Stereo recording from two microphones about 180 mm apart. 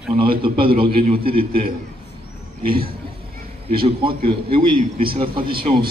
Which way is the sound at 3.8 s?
30° right (ahead or behind).